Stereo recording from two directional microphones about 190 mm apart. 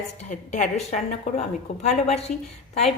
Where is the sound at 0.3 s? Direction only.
40° left (ahead or behind).